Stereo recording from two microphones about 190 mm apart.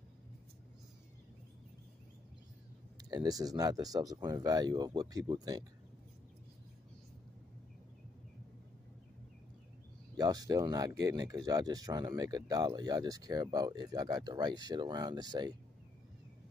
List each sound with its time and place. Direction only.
3.1 s speech: 20° right (ahead or behind)
10.1 s speech: 20° right (ahead or behind)